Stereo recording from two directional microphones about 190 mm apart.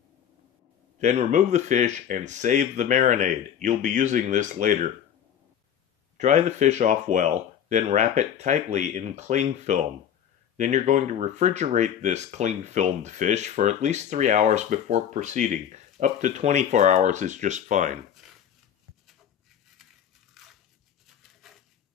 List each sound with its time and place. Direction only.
0.9 s speech: 35° right (ahead or behind)
6.1 s speech: 40° right (ahead or behind)
20.4 s a sound: centre (ahead or behind)